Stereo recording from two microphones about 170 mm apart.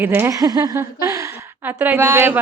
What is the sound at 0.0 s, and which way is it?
A woman's voice, 10° right (ahead or behind).